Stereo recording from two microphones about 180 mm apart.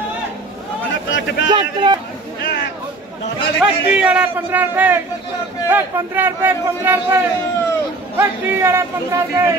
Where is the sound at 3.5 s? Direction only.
5° right (ahead or behind).